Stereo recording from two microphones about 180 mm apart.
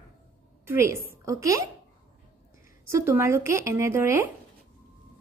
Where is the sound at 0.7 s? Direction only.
15° right (ahead or behind).